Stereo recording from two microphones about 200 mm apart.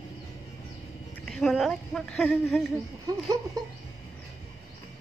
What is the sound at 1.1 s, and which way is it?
Speech, centre (ahead or behind).